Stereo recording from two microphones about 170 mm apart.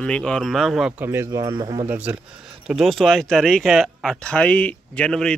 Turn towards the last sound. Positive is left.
turn(degrees=5)  # may be behind; listen again after turning